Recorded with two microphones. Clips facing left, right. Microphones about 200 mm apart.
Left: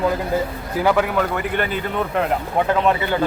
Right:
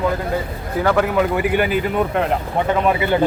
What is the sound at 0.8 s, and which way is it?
Speech, 5° left (ahead or behind).